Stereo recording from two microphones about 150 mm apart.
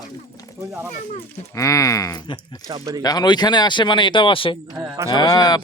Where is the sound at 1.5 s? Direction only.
20° left (ahead or behind).